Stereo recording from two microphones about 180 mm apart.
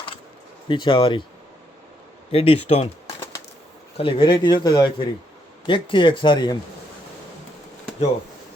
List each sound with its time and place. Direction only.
0.7 s speech: 25° left (ahead or behind)
2.3 s speech: 30° left (ahead or behind)
3.9 s speech: 30° left (ahead or behind)